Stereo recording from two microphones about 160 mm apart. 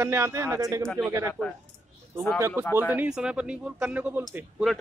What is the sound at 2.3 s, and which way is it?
Speech, 15° right (ahead or behind).